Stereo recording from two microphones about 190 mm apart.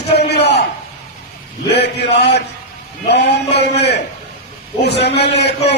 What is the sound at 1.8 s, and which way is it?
A man's voice, 60° left (ahead or behind).